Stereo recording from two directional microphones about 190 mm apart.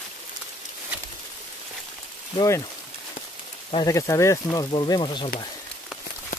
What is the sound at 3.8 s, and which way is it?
Speech, 15° left (ahead or behind).